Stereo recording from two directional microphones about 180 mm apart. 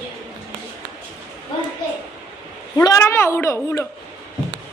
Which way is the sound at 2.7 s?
15° left (ahead or behind).